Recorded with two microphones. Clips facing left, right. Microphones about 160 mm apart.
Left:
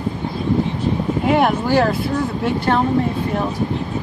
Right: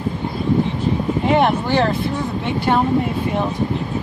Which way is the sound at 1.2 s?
5° left (ahead or behind).